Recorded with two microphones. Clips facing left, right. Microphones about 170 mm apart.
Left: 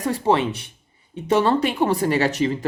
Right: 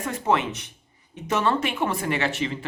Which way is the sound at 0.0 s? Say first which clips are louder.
Left 4 dB; 30° left (ahead or behind).